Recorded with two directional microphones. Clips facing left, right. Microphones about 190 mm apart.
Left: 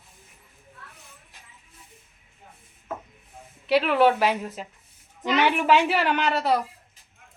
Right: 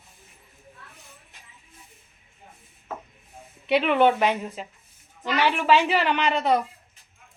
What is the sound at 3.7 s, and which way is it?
Speech, centre (ahead or behind).